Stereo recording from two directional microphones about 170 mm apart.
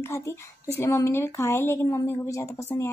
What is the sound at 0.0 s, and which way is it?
A woman's voice, 15° left (ahead or behind).